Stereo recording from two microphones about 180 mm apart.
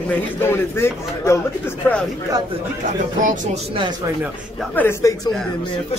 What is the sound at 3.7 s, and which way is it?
Speech, 25° right (ahead or behind).